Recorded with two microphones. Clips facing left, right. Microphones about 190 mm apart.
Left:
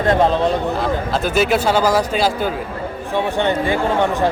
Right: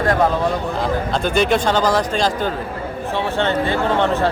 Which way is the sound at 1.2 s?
5° left (ahead or behind).